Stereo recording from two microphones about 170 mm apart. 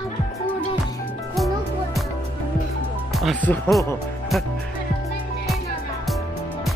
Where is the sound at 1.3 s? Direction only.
Centre (ahead or behind).